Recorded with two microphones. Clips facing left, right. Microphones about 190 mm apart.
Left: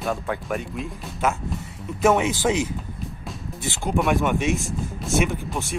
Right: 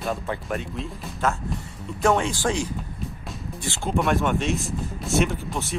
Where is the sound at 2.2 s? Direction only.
20° left (ahead or behind).